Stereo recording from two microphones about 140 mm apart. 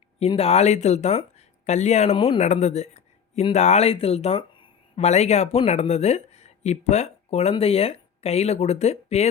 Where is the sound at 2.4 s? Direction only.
55° left (ahead or behind).